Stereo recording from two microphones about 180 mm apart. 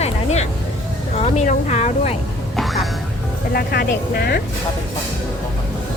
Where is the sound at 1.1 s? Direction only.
40° left (ahead or behind).